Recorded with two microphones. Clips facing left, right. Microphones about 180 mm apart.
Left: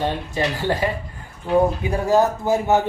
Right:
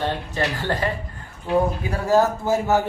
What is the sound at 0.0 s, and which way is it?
Speech, 15° left (ahead or behind).